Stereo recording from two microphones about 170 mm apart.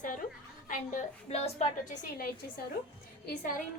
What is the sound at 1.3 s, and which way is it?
Speech, 40° left (ahead or behind).